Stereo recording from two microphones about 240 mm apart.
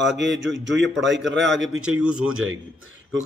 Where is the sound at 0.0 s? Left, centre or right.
Right.